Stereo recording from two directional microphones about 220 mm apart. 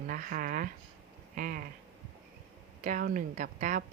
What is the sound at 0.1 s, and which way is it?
A woman's voice, 40° right (ahead or behind).